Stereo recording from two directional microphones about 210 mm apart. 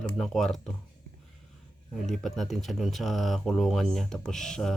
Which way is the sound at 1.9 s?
Centre (ahead or behind).